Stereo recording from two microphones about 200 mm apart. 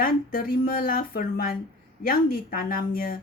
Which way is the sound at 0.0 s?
45° left (ahead or behind).